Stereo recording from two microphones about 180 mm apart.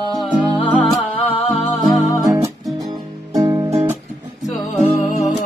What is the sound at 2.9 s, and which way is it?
Music, 20° right (ahead or behind).